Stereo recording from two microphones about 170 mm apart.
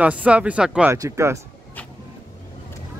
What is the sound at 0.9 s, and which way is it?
Speech, 20° right (ahead or behind).